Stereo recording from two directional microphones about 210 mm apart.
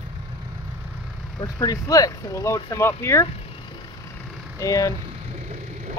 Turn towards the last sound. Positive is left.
turn(degrees=-35)  # may be behind; listen again after turning